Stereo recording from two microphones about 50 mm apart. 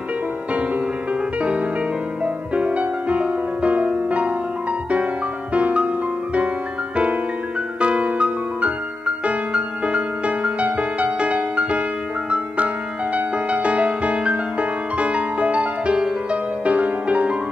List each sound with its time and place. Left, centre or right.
2.2 s music: right
5.5 s music: right
7.8 s music: right